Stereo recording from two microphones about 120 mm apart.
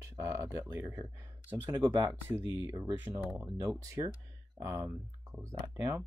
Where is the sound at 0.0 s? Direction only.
25° right (ahead or behind).